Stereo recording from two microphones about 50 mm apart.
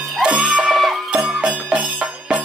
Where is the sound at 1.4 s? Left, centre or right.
Right.